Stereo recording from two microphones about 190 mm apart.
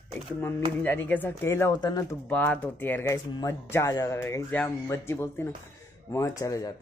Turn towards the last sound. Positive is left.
turn(degrees=15)  # may be behind; listen again after turning